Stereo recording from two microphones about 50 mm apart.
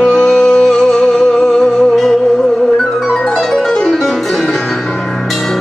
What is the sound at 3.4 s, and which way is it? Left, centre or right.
Music, centre.